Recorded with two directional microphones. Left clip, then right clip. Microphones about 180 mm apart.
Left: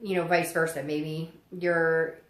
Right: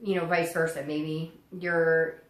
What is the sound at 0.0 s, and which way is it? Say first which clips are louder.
A woman's voice: left 1 dB; 45° left (ahead or behind).